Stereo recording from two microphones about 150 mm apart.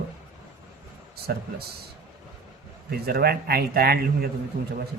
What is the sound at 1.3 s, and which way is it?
Speech, 90° right.